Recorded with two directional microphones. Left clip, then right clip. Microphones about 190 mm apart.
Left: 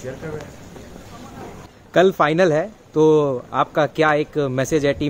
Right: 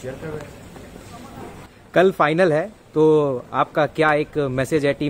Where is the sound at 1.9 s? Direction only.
5° left (ahead or behind).